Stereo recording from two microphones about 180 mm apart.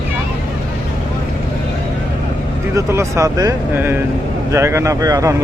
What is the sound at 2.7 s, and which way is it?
Speech, 15° right (ahead or behind).